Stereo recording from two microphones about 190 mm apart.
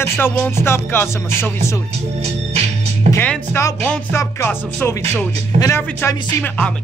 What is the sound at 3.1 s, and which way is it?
Music, 10° left (ahead or behind).